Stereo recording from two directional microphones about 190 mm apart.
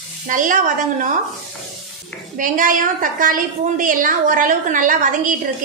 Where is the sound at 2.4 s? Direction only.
45° right (ahead or behind).